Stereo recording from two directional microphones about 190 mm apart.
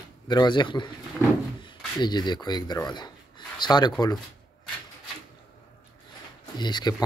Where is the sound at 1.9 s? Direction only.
20° left (ahead or behind).